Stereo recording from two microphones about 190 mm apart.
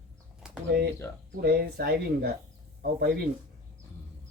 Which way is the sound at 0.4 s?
5° right (ahead or behind).